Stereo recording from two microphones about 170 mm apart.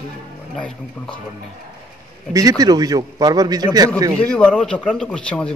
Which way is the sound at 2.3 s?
20° right (ahead or behind).